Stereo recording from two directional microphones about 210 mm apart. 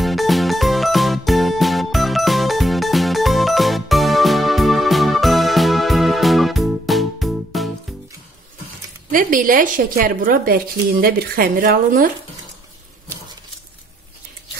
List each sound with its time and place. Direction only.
0.0 s music: centre (ahead or behind)
9.1 s a woman's voice: 40° right (ahead or behind)